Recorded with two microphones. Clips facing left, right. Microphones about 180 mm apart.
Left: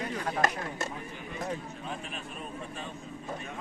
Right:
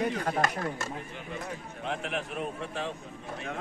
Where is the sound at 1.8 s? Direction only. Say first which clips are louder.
Right 6 dB; 75° right (ahead or behind).